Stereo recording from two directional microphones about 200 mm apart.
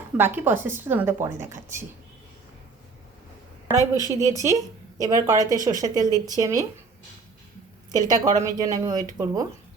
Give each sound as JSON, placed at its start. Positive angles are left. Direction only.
{"t": 0.2, "sound": "a woman's voice", "side_deg": -10}
{"t": 3.8, "sound": "a woman's voice", "side_deg": 20}
{"t": 4.2, "sound": "a woman's voice", "side_deg": -15}
{"t": 7.9, "sound": "a woman's voice", "side_deg": -20}